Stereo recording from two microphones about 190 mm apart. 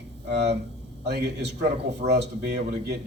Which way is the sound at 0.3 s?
60° right (ahead or behind).